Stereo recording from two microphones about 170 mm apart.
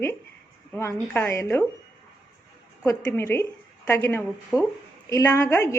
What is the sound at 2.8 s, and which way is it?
A woman's voice, 15° left (ahead or behind).